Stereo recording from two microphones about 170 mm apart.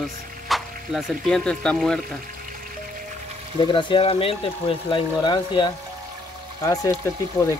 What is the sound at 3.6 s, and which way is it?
Speech, 30° left (ahead or behind).